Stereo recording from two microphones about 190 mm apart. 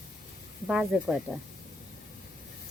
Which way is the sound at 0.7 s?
Centre (ahead or behind).